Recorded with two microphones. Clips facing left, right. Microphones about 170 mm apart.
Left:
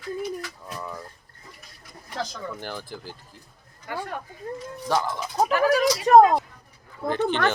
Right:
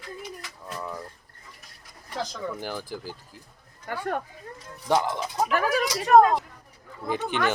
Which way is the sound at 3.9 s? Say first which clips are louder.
Left 1 dB; 45° right (ahead or behind).